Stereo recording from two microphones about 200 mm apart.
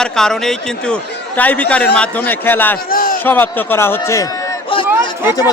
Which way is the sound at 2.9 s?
45° left (ahead or behind).